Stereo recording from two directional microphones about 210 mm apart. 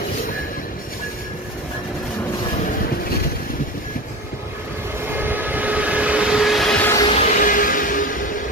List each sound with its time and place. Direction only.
5.1 s train: 10° right (ahead or behind); by 7.1 s 10° left (ahead or behind)
7.1 s a sound: 30° left (ahead or behind)
7.3 s train: 40° left (ahead or behind)